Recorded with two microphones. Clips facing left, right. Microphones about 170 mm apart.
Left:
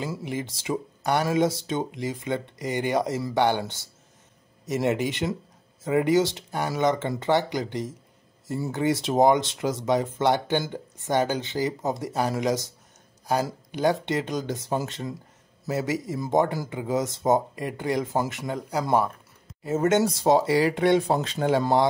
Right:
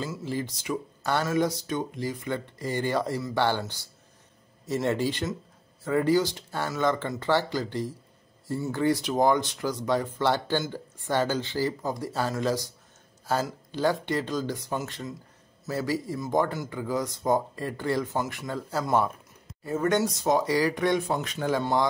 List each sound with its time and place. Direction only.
0.2 s speech: 20° left (ahead or behind)